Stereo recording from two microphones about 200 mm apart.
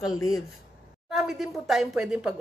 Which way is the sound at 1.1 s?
Centre (ahead or behind).